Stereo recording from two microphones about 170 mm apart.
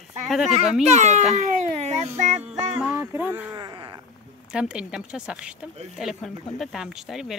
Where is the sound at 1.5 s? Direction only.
45° right (ahead or behind).